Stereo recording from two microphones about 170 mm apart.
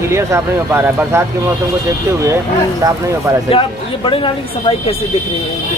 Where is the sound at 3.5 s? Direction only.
30° left (ahead or behind).